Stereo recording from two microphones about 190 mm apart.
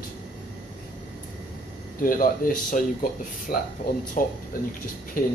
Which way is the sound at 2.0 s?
45° left (ahead or behind).